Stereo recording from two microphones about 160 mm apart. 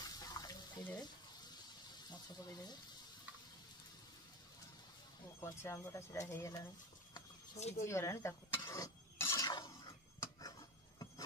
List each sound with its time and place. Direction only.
0.0 s water: 25° left (ahead or behind)
2.0 s speech: 25° left (ahead or behind)
5.4 s speech: 15° left (ahead or behind)
7.5 s speech: 45° left (ahead or behind)
7.8 s speech: 15° left (ahead or behind)
9.5 s a sound: 25° left (ahead or behind)